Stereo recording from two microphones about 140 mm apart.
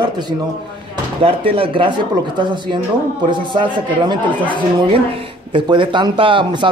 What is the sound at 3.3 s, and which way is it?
Speech, 35° right (ahead or behind).